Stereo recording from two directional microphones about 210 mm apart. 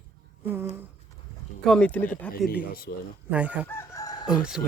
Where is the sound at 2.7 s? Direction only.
45° left (ahead or behind).